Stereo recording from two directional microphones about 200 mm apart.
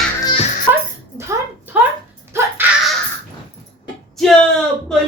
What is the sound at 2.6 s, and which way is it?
Crow, 10° right (ahead or behind).